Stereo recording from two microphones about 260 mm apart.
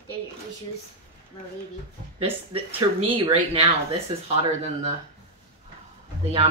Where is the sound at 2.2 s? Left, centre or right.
Right.